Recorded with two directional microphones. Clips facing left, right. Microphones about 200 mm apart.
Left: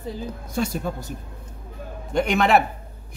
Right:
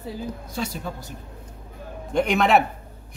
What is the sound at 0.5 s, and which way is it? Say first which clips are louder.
Speech: left 8 dB; 50° left (ahead or behind).